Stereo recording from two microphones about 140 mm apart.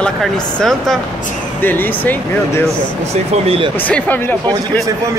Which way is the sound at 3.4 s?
40° right (ahead or behind).